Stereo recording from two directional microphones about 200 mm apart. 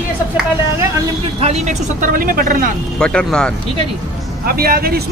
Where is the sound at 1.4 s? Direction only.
35° right (ahead or behind).